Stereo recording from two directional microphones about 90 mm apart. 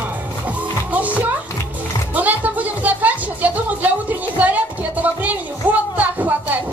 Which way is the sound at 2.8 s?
20° right (ahead or behind).